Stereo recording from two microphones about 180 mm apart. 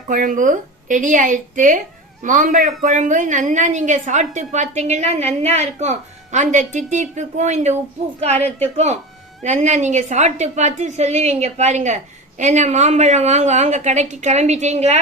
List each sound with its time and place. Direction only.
0.1 s a woman's voice: 45° right (ahead or behind)